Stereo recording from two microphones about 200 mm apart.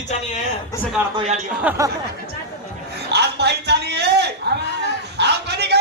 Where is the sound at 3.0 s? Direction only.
55° right (ahead or behind).